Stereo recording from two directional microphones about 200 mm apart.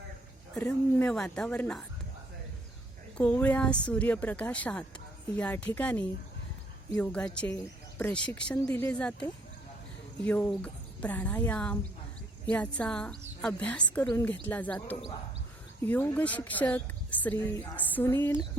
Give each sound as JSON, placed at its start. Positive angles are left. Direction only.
{"t": 0.6, "sound": "a woman's voice", "side_deg": 10}
{"t": 3.2, "sound": "a woman's voice", "side_deg": 5}